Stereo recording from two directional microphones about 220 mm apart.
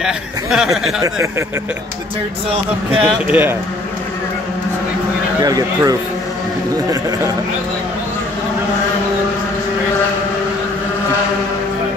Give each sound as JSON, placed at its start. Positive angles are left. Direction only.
{"t": 0.0, "sound": "speech", "side_deg": 0}
{"t": 1.0, "sound": "speech", "side_deg": -15}
{"t": 3.0, "sound": "speech", "side_deg": -5}
{"t": 5.4, "sound": "speech", "side_deg": -15}